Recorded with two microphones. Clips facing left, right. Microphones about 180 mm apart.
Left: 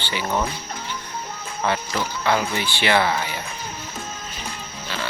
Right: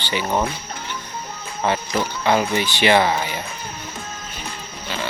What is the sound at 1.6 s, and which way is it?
Speech, 20° right (ahead or behind).